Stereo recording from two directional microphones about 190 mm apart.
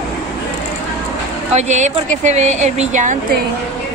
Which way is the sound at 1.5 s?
40° right (ahead or behind).